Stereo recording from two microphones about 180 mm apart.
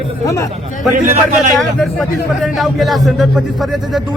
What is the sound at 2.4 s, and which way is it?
A man's voice, centre (ahead or behind).